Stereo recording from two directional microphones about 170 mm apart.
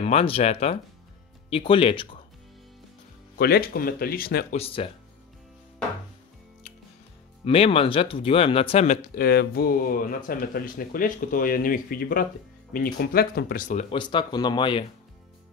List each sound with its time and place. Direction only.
0.0 s speech: 35° left (ahead or behind)
3.3 s speech: 65° left (ahead or behind)
4.5 s speech: 35° left (ahead or behind)
7.4 s speech: 35° left (ahead or behind)
9.1 s speech: 65° left (ahead or behind)
13.7 s speech: 40° left (ahead or behind)
13.9 s speech: 25° left (ahead or behind)